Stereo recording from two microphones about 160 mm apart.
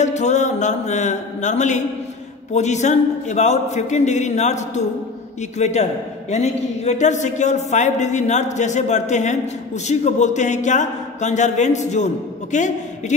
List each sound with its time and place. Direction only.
0.0 s speech: 45° left (ahead or behind)